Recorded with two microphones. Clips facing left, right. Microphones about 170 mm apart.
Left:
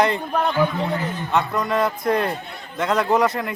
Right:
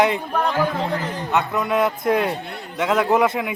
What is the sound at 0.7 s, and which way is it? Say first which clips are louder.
Speech: right 1 dB; 90° right.